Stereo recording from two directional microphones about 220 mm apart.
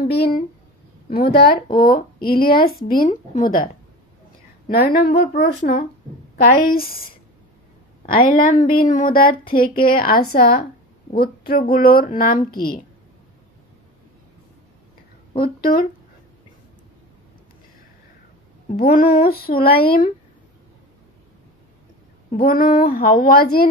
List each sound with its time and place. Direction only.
0.0 s a woman's voice: 45° left (ahead or behind)
8.0 s a woman's voice: 40° left (ahead or behind)
15.4 s a woman's voice: 40° left (ahead or behind)
18.8 s a woman's voice: 40° left (ahead or behind)
22.4 s speech: 40° left (ahead or behind)